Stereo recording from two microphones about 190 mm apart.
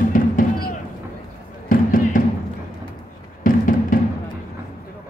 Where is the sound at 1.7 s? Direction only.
45° left (ahead or behind).